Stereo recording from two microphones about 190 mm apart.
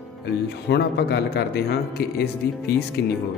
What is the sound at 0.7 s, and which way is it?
Speech, 60° left (ahead or behind).